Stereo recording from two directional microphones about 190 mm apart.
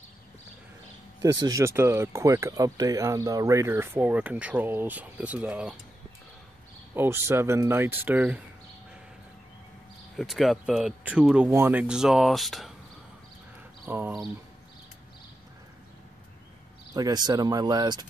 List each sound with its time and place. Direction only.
1.4 s speech: 15° right (ahead or behind)
7.0 s speech: 10° right (ahead or behind)
10.1 s speech: centre (ahead or behind)
13.8 s speech: 10° right (ahead or behind)
16.9 s speech: 20° right (ahead or behind)